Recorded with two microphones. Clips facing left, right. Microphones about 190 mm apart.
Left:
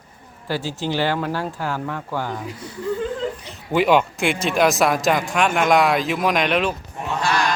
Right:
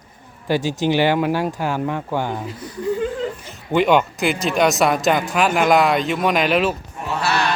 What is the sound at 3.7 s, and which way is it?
A man's voice, 5° left (ahead or behind).